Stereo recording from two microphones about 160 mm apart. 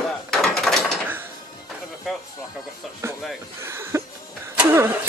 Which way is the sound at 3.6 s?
15° right (ahead or behind).